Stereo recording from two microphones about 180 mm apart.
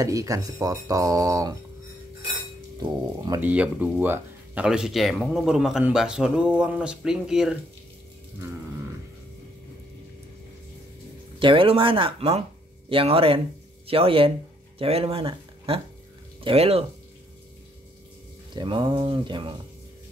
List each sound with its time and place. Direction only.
0.0 s speech: 20° right (ahead or behind)
2.8 s speech: 20° right (ahead or behind)
3.3 s speech: 10° right (ahead or behind)
11.3 s speech: 30° right (ahead or behind)
18.5 s speech: 25° right (ahead or behind)